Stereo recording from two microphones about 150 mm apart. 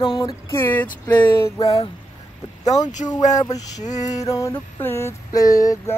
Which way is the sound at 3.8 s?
50° left (ahead or behind).